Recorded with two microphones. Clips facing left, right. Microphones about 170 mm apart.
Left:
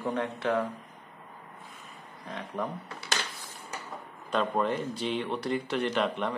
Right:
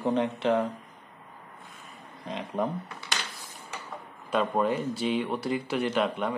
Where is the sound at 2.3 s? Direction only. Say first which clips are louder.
Right 4 dB; 20° right (ahead or behind).